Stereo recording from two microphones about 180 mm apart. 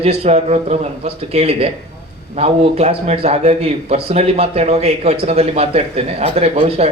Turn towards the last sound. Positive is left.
turn(degrees=-35)  # may be behind; listen again after turning